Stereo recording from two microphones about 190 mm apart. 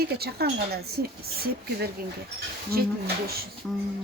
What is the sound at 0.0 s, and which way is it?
A woman's voice, 55° right (ahead or behind).